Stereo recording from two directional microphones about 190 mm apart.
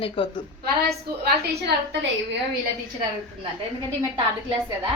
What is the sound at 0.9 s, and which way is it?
A woman's voice, 60° right (ahead or behind).